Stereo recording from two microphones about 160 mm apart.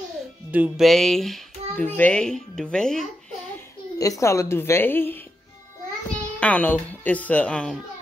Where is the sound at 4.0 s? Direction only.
20° left (ahead or behind).